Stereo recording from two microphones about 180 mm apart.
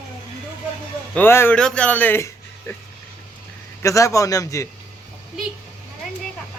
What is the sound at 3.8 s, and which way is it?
Speech, 15° left (ahead or behind).